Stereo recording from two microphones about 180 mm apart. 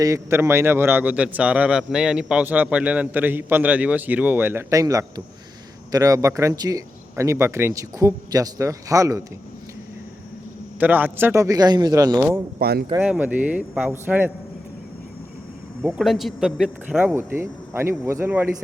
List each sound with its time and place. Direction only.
0.0 s a man's voice: 15° right (ahead or behind)
10.8 s a man's voice: 10° right (ahead or behind)
12.5 s speech: 60° right (ahead or behind)
13.0 s a man's voice: 10° right (ahead or behind)
15.8 s a man's voice: centre (ahead or behind)